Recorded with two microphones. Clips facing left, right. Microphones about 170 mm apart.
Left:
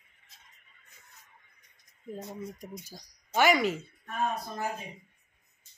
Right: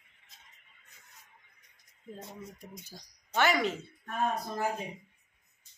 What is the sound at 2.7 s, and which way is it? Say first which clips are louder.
Speech: left 4 dB; 10° left (ahead or behind).